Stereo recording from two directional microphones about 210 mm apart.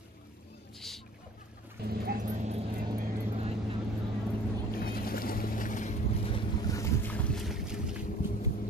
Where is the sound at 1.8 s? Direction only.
50° right (ahead or behind).